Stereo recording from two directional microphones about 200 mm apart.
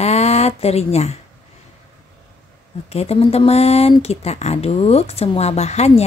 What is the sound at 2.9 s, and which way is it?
Speech, 30° left (ahead or behind).